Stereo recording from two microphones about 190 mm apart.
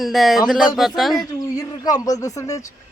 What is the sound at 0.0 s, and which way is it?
Speech, centre (ahead or behind).